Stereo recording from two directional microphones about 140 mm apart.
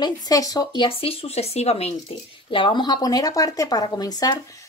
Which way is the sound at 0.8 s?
45° left (ahead or behind).